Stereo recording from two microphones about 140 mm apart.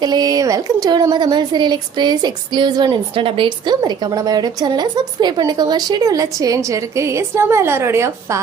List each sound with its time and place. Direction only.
0.0 s a woman's voice: 30° right (ahead or behind)